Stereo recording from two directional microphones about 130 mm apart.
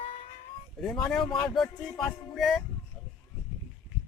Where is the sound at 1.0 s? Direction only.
5° left (ahead or behind).